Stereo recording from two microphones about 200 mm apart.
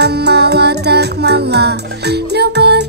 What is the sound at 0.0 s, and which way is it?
Music, 55° right (ahead or behind).